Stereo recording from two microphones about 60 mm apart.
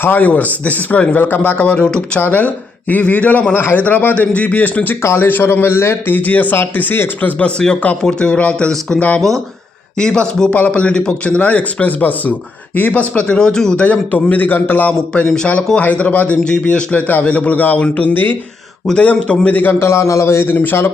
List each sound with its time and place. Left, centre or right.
0.0 s a man's voice: left
2.2 s a man's voice: left
10.0 s speech: centre
10.5 s a man's voice: left
13.8 s a man's voice: left
18.9 s a man's voice: centre
19.8 s a man's voice: left
20.5 s a man's voice: left